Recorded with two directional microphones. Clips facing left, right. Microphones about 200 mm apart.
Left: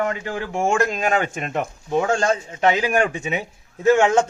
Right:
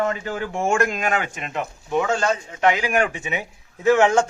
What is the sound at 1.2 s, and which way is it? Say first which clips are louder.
Speech: left 4 dB; 40° left (ahead or behind).